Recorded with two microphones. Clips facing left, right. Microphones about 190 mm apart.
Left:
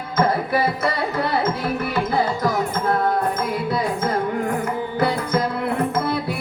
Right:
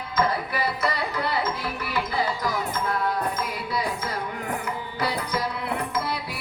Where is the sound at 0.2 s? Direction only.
50° left (ahead or behind).